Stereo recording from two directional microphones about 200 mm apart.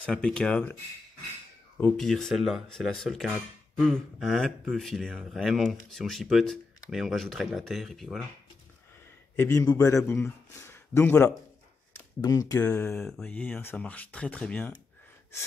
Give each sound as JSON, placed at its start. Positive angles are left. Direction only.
{"t": 0.0, "sound": "speech", "side_deg": 5}
{"t": 1.8, "sound": "speech", "side_deg": 5}
{"t": 9.4, "sound": "speech", "side_deg": 15}
{"t": 12.7, "sound": "speech", "side_deg": 5}